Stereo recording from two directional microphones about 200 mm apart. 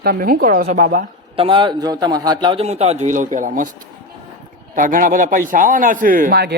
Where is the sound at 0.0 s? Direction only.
45° right (ahead or behind).